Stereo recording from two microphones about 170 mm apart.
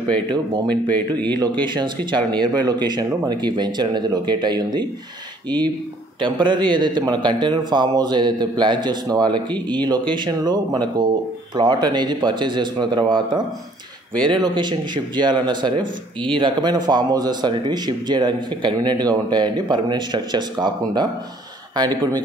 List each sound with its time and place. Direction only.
0.7 s speech: 10° left (ahead or behind)
1.6 s speech: 25° right (ahead or behind)
6.1 s speech: 30° right (ahead or behind)